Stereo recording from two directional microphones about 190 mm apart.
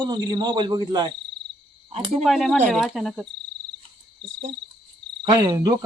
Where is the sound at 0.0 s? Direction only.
20° right (ahead or behind).